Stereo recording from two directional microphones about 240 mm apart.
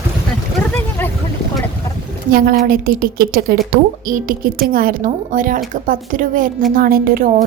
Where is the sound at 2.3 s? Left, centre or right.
Right.